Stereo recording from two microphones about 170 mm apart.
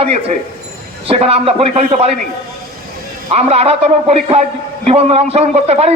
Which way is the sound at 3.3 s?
35° right (ahead or behind).